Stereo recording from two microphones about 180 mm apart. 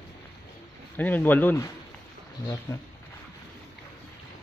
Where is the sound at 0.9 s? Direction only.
10° left (ahead or behind).